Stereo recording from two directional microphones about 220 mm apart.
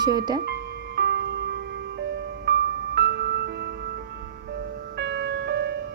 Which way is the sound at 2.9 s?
50° right (ahead or behind).